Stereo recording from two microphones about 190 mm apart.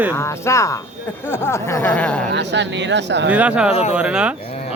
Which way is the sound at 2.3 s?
65° right (ahead or behind).